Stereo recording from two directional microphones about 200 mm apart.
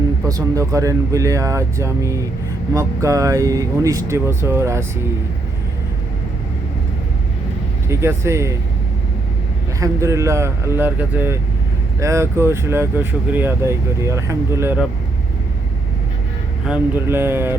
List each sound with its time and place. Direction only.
0.3 s speech: 15° right (ahead or behind)
7.9 s speech: 15° right (ahead or behind)
9.8 s speech: 15° right (ahead or behind)
16.6 s speech: 5° right (ahead or behind)